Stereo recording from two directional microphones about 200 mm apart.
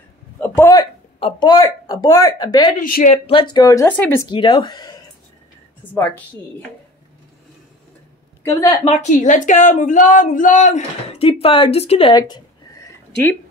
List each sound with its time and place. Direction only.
0.4 s a man's voice: 15° left (ahead or behind)
2.8 s speech: 45° left (ahead or behind)
3.3 s speech: 25° left (ahead or behind)
4.3 s speech: 20° left (ahead or behind)
5.8 s a woman's voice: 10° left (ahead or behind)
8.5 s speech: 15° left (ahead or behind)
8.8 s speech: 35° left (ahead or behind)